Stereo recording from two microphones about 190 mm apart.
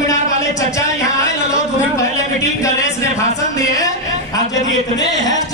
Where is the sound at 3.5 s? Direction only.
20° left (ahead or behind).